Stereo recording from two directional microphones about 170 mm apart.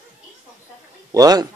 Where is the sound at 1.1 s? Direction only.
20° right (ahead or behind).